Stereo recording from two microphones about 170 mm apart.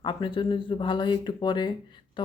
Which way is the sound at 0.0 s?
25° left (ahead or behind).